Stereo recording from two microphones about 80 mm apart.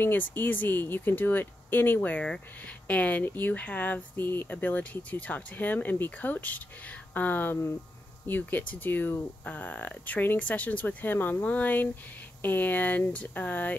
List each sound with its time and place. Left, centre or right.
0.0 s speech: left